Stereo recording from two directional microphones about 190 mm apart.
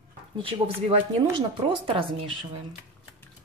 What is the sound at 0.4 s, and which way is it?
Speech, 30° right (ahead or behind).